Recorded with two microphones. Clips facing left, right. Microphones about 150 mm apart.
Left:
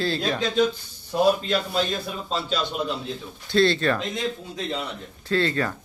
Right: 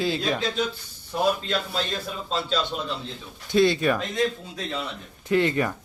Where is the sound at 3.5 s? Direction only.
15° right (ahead or behind).